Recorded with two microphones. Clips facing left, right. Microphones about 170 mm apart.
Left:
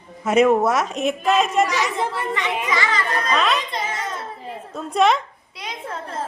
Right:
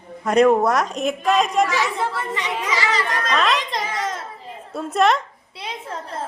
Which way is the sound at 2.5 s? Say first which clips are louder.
Right 1 dB; 20° left (ahead or behind).